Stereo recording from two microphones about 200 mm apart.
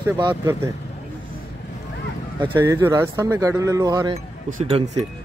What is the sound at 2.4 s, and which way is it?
Speech, 20° right (ahead or behind).